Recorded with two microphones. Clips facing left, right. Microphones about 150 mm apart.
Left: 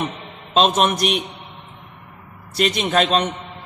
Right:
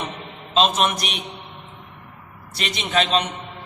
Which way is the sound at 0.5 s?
45° left (ahead or behind).